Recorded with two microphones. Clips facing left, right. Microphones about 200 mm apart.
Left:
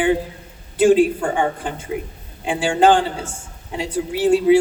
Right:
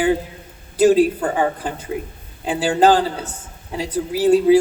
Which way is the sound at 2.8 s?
35° right (ahead or behind).